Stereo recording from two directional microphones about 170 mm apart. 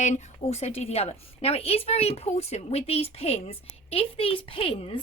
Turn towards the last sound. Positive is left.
turn(degrees=35)  # may be behind; listen again after turning